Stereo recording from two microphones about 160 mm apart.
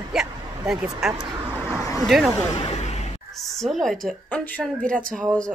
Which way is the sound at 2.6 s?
40° left (ahead or behind).